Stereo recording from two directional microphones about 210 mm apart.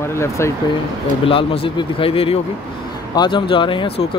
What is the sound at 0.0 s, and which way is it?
Speech, 15° left (ahead or behind).